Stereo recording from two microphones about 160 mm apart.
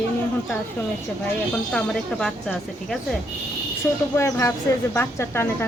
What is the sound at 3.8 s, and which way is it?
Speech, 15° left (ahead or behind).